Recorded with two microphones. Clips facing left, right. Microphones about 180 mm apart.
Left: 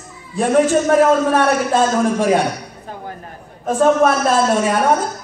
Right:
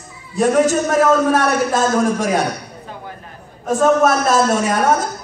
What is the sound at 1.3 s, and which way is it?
A woman's voice, 45° right (ahead or behind).